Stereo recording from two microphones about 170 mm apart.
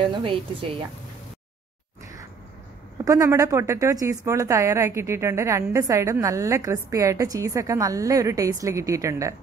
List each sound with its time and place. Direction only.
0.1 s a woman's voice: 30° right (ahead or behind)
3.1 s a woman's voice: 20° right (ahead or behind)